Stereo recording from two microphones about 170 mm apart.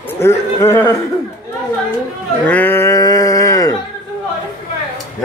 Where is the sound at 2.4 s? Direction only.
10° left (ahead or behind).